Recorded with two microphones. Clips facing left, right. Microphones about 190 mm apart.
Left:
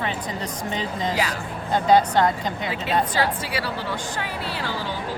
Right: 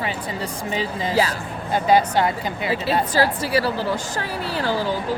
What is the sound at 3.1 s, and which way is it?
A woman's voice, 40° right (ahead or behind).